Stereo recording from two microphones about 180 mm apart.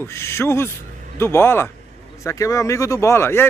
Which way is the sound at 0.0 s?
15° left (ahead or behind).